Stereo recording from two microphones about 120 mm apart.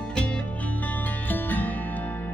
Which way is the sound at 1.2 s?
15° left (ahead or behind).